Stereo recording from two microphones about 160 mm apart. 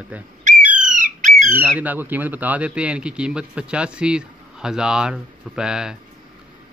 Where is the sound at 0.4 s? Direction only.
50° right (ahead or behind).